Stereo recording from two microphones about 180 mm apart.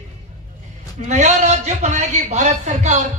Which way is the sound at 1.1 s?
40° right (ahead or behind).